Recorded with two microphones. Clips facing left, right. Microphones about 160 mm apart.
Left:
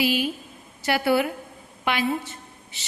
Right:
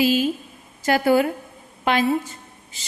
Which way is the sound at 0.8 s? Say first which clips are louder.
Right 4 dB; 40° right (ahead or behind).